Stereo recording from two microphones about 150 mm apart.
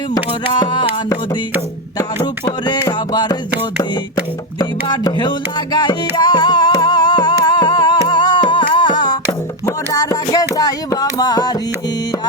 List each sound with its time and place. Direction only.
0.6 s music: 30° left (ahead or behind)
2.8 s music: 25° left (ahead or behind)
4.9 s music: 30° left (ahead or behind)
9.6 s a sound: 20° left (ahead or behind)
10.5 s music: 25° left (ahead or behind)